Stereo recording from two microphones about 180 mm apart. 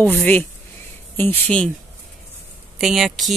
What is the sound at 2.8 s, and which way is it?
Speech, centre (ahead or behind).